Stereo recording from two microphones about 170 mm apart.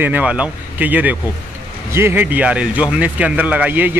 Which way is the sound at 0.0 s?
10° right (ahead or behind).